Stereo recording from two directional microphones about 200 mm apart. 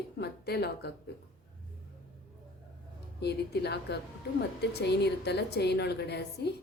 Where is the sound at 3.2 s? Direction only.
55° left (ahead or behind).